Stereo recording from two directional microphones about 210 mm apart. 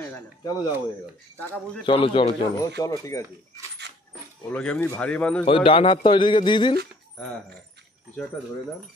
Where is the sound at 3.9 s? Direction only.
55° right (ahead or behind).